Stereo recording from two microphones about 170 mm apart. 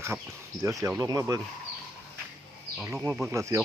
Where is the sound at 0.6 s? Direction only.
20° right (ahead or behind).